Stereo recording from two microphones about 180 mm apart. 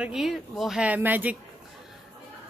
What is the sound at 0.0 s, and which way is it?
A woman's voice, centre (ahead or behind).